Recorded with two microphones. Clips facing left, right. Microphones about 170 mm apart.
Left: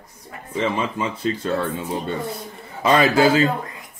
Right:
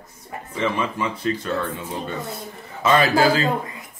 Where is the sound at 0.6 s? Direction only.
25° left (ahead or behind).